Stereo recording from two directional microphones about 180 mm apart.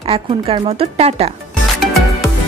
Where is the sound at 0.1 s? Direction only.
30° right (ahead or behind).